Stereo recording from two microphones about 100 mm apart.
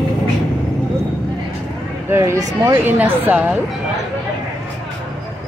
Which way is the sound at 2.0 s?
25° right (ahead or behind).